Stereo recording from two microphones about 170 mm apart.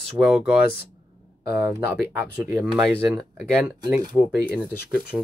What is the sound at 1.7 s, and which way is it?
Speech, 10° right (ahead or behind).